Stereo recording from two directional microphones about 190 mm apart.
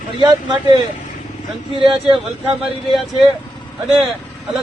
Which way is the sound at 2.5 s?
Centre (ahead or behind).